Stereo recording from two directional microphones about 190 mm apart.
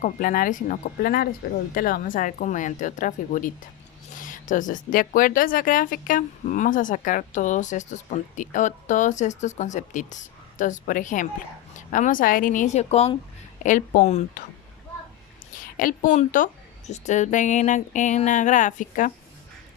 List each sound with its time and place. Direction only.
0.0 s a woman's voice: 45° left (ahead or behind)
15.5 s a woman's voice: 45° left (ahead or behind)